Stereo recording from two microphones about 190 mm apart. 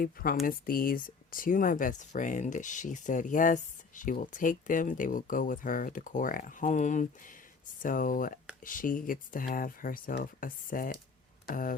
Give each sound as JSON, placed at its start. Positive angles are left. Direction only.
{"t": 0.0, "sound": "speech", "side_deg": 50}